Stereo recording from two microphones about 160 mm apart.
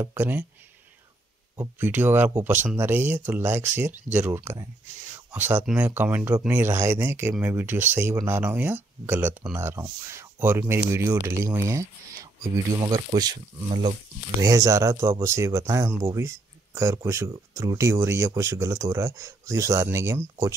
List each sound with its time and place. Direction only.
0.0 s speech: 15° right (ahead or behind)
1.6 s speech: 10° right (ahead or behind)
12.4 s speech: 25° right (ahead or behind)
14.4 s speech: 20° right (ahead or behind)